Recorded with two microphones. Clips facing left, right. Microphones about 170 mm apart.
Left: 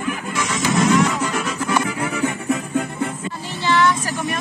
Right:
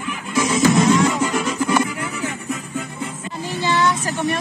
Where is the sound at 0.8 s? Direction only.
Centre (ahead or behind).